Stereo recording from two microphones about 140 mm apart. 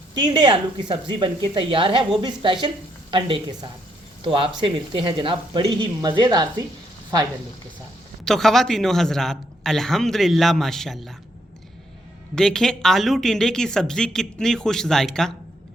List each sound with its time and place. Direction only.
0.1 s speech: 30° right (ahead or behind)
8.2 s speech: 5° left (ahead or behind)
12.3 s speech: 5° left (ahead or behind)